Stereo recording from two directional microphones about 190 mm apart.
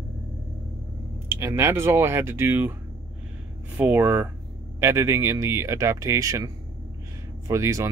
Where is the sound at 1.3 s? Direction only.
15° right (ahead or behind).